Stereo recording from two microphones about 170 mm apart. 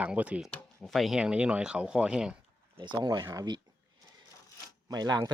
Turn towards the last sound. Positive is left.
turn(degrees=-25)  # may be behind; listen again after turning